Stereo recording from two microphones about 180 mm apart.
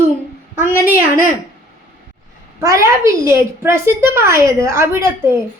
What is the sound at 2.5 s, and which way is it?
A woman's voice, 15° right (ahead or behind).